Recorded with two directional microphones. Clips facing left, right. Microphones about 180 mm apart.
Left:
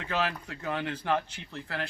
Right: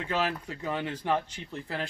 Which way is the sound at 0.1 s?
5° right (ahead or behind).